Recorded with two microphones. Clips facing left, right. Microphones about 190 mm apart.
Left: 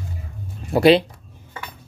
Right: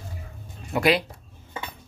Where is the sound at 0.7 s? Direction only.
30° left (ahead or behind).